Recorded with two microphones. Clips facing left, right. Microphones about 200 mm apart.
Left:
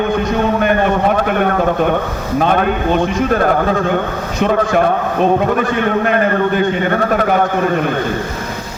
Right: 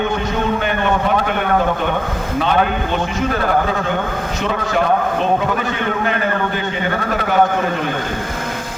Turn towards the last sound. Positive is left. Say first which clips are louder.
# left 5 dB
turn(degrees=50)  # may be behind; listen again after turning